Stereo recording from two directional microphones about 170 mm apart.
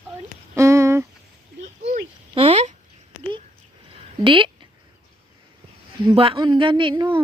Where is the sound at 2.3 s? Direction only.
35° right (ahead or behind).